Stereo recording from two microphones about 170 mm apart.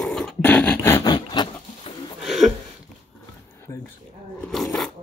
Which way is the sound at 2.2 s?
Centre (ahead or behind).